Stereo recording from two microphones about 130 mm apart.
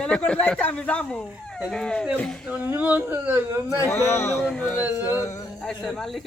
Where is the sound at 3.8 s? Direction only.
20° left (ahead or behind).